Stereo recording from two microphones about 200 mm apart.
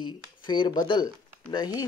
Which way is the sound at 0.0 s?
20° left (ahead or behind).